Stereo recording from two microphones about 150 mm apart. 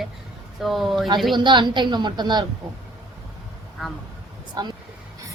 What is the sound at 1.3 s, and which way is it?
A woman's voice, 30° right (ahead or behind).